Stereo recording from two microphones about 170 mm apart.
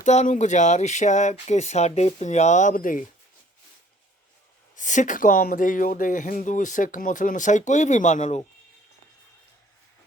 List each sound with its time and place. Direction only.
0.0 s speech: 45° left (ahead or behind)
4.7 s speech: 45° left (ahead or behind)